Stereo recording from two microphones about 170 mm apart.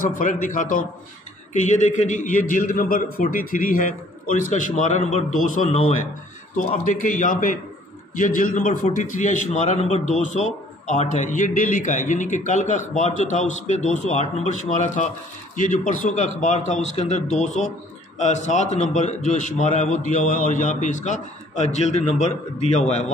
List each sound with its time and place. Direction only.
0.0 s a man's voice: 50° left (ahead or behind)